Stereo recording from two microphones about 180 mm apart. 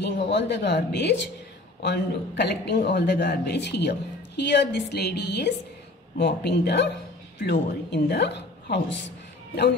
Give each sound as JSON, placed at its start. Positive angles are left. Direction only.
{"t": 0.3, "sound": "a man's voice", "side_deg": 70}